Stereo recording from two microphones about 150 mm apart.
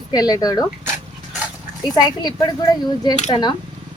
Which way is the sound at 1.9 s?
25° left (ahead or behind).